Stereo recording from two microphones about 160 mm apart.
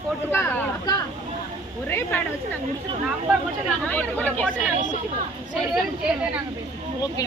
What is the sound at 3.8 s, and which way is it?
Speech, 10° left (ahead or behind).